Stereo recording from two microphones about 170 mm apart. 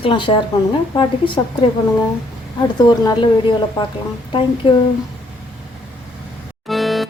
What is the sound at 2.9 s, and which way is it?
A woman's voice, 25° left (ahead or behind).